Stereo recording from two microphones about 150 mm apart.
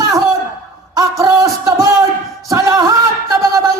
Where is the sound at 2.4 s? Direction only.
20° right (ahead or behind).